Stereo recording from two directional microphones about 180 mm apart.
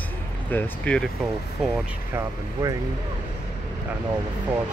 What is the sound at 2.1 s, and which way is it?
Speech, 20° right (ahead or behind).